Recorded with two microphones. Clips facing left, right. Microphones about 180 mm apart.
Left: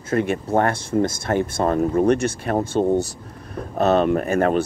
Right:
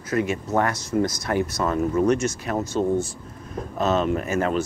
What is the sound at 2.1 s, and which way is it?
Speech, 55° left (ahead or behind).